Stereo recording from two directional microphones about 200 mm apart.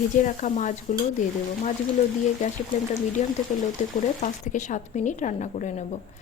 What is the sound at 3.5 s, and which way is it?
Speech, 35° left (ahead or behind).